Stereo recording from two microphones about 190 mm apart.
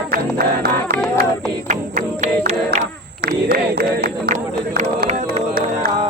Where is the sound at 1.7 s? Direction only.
40° right (ahead or behind).